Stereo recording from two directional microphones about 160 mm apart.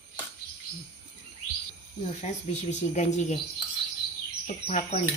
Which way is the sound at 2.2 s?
45° left (ahead or behind).